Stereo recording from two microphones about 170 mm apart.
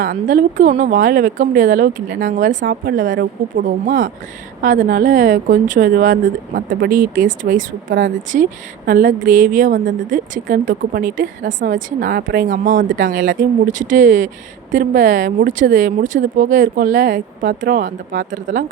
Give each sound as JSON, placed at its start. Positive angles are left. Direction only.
{"t": 0.0, "sound": "speech", "side_deg": -50}
{"t": 2.5, "sound": "a woman's voice", "side_deg": -75}